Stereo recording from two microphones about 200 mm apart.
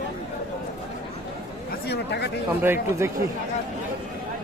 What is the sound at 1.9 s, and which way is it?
Speech, 55° left (ahead or behind).